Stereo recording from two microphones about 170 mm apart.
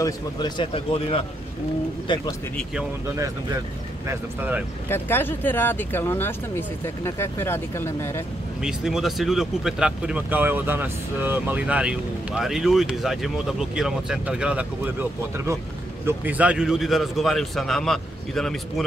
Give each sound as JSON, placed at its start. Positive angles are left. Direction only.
{"t": 0.0, "sound": "a man's voice", "side_deg": 25}
{"t": 4.1, "sound": "speech", "side_deg": -10}
{"t": 4.8, "sound": "speech", "side_deg": 15}
{"t": 8.6, "sound": "speech", "side_deg": -5}